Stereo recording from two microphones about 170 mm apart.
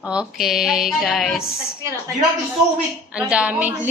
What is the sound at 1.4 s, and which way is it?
Speech, 65° left (ahead or behind).